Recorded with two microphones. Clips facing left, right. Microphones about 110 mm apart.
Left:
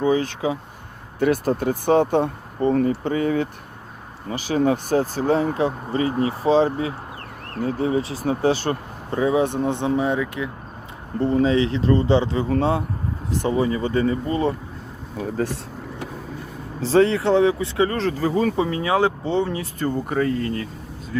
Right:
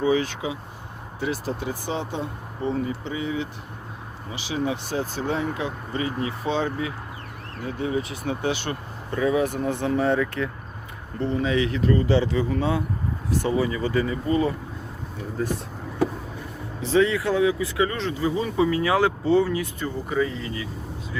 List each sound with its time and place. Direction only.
0.0 s speech: 45° left (ahead or behind)
1.2 s speech: 55° left (ahead or behind); by 10.5 s 15° left (ahead or behind)
11.2 s speech: 35° left (ahead or behind)
13.5 s speech: 30° left (ahead or behind)
16.8 s speech: 35° left (ahead or behind)
18.6 s speech: 30° left (ahead or behind)
19.8 s speech: 50° left (ahead or behind)